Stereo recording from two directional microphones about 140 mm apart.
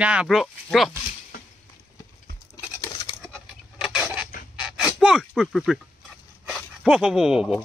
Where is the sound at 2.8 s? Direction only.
30° left (ahead or behind).